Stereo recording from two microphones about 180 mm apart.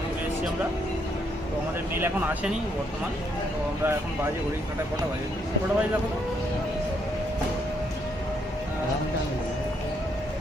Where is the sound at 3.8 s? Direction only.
15° right (ahead or behind).